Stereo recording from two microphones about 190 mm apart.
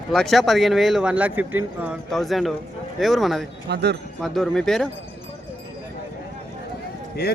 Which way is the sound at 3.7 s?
60° right (ahead or behind).